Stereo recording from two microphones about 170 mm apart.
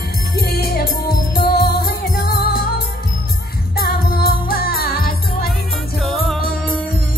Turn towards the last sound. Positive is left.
turn(degrees=0)  # may be behind; listen again after turning